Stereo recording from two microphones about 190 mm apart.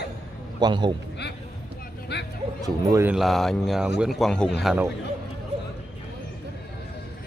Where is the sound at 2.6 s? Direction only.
15° right (ahead or behind).